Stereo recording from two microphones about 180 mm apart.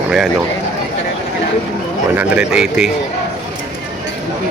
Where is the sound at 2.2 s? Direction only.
5° right (ahead or behind).